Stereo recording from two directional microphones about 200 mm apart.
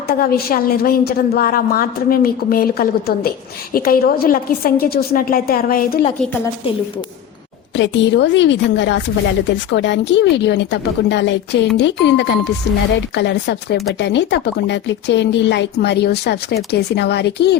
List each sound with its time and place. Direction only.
0.1 s a woman's voice: 50° left (ahead or behind)
7.8 s speech: 65° left (ahead or behind)